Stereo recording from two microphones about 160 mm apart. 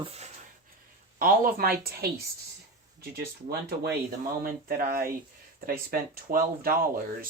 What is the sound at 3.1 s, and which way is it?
Speech, 85° right.